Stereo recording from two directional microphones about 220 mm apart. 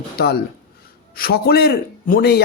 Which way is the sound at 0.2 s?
45° left (ahead or behind).